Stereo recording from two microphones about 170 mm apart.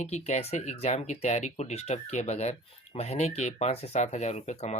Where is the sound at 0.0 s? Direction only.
40° left (ahead or behind).